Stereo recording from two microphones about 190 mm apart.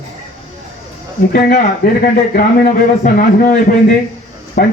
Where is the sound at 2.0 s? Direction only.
45° left (ahead or behind).